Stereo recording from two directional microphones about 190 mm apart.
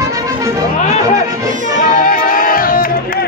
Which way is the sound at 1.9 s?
45° left (ahead or behind).